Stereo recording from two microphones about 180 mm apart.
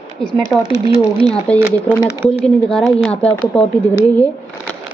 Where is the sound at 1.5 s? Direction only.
5° left (ahead or behind).